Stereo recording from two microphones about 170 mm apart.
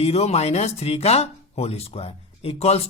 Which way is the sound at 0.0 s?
40° left (ahead or behind).